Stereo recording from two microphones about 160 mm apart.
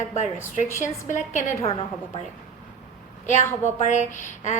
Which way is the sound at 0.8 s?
50° left (ahead or behind).